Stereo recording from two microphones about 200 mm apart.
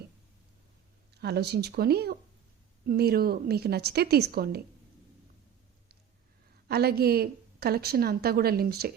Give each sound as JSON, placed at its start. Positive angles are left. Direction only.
{"t": 1.2, "sound": "a woman's voice", "side_deg": -55}
{"t": 6.7, "sound": "a woman's voice", "side_deg": -55}